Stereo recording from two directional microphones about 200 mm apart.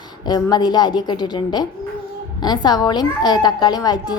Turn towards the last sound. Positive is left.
turn(degrees=20)  # may be behind; listen again after turning